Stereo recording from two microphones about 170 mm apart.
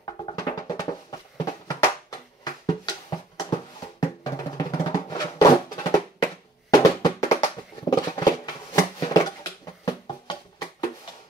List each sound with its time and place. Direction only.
0.0 s music: 25° left (ahead or behind)
1.4 s a sound: 20° left (ahead or behind)
4.0 s music: 20° left (ahead or behind)